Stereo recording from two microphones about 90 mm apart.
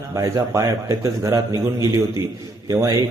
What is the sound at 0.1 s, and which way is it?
A man's voice, 35° right (ahead or behind).